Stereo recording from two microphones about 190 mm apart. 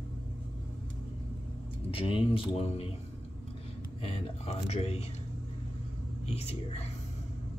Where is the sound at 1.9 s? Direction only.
30° left (ahead or behind).